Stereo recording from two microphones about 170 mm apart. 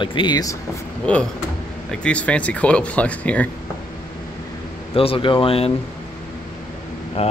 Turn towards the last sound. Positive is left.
turn(degrees=35)  # may be behind; listen again after turning